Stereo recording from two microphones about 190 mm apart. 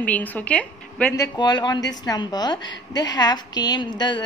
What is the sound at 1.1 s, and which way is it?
A woman's voice, 20° left (ahead or behind).